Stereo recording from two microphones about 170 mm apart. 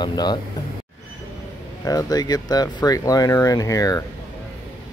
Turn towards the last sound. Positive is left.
turn(degrees=20)  # may be behind; listen again after turning